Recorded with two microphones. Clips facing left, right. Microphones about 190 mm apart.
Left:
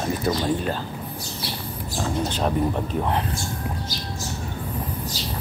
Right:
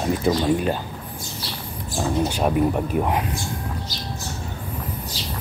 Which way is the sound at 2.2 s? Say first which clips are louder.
Right 3 dB; 10° right (ahead or behind).